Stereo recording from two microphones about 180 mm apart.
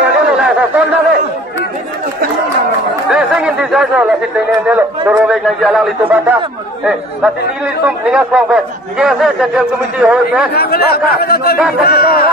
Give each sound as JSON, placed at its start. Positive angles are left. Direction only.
{"t": 0.4, "sound": "a sound", "side_deg": -10}
{"t": 3.1, "sound": "chatter", "side_deg": -5}
{"t": 4.6, "sound": "a man's voice", "side_deg": -10}
{"t": 10.5, "sound": "speech", "side_deg": 60}